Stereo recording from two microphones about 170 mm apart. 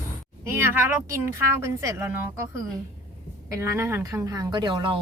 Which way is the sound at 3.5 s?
15° right (ahead or behind).